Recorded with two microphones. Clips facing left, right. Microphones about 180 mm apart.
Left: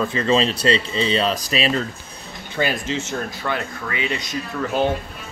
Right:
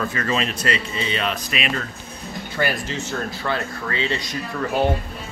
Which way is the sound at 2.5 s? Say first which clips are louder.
Left 2 dB; 20° left (ahead or behind).